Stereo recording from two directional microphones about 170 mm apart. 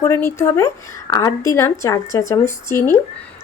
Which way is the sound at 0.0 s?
15° left (ahead or behind).